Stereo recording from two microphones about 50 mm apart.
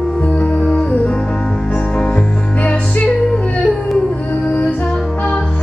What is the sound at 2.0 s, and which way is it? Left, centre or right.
Music, left.